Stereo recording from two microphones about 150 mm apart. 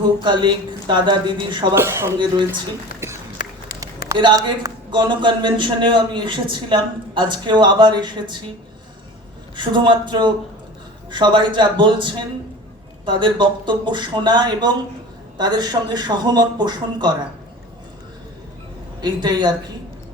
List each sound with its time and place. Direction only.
0.3 s a man's voice: 30° right (ahead or behind)
1.7 s speech: 15° right (ahead or behind)
4.2 s a man's voice: 30° right (ahead or behind)
9.6 s a man's voice: 30° right (ahead or behind)
19.0 s a man's voice: 30° right (ahead or behind)